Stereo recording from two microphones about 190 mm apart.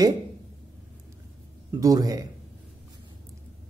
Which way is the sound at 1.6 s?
15° right (ahead or behind).